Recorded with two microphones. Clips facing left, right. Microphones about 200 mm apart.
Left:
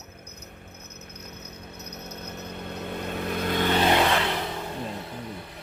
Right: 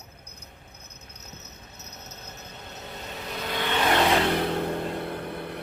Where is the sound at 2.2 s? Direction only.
60° left (ahead or behind).